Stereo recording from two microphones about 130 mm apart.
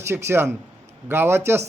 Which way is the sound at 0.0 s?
20° right (ahead or behind).